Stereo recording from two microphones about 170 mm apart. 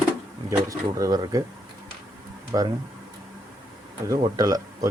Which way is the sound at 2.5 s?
25° right (ahead or behind).